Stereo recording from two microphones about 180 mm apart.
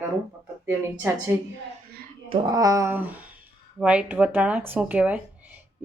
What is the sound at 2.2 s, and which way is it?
Speech, 20° right (ahead or behind).